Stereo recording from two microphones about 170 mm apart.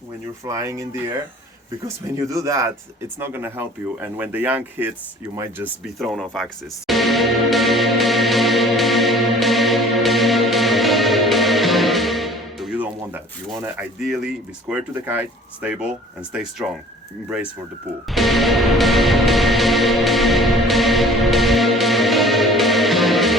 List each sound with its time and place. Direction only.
0.4 s speech: 15° right (ahead or behind)
2.1 s speech: 20° right (ahead or behind)
6.0 s music: centre (ahead or behind)
14.0 s speech: centre (ahead or behind)
18.1 s music: centre (ahead or behind)